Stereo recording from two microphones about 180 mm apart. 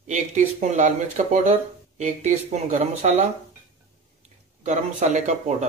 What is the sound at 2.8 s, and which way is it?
Speech, 40° right (ahead or behind).